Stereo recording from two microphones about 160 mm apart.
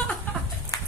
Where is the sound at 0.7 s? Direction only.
25° left (ahead or behind).